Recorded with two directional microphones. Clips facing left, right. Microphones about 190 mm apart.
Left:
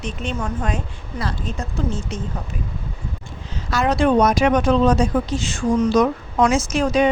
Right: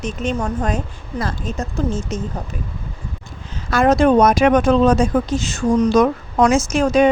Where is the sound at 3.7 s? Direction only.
50° right (ahead or behind).